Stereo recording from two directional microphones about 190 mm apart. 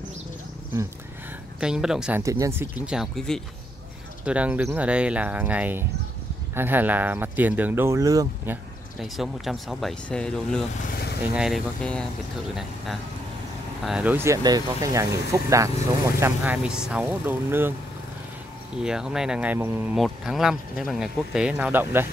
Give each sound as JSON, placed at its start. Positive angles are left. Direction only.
{"t": 1.6, "sound": "speech", "side_deg": -5}
{"t": 2.2, "sound": "speech", "side_deg": -15}
{"t": 9.0, "sound": "speech", "side_deg": 0}
{"t": 13.8, "sound": "speech", "side_deg": -5}
{"t": 18.8, "sound": "speech", "side_deg": -5}